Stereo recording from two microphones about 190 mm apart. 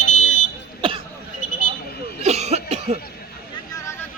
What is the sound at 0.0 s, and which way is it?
Smoke detector, 40° left (ahead or behind).